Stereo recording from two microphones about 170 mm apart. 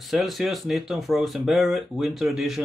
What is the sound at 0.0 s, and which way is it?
Speech, centre (ahead or behind).